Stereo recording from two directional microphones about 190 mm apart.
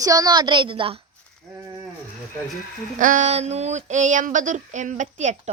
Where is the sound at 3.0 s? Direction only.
40° right (ahead or behind).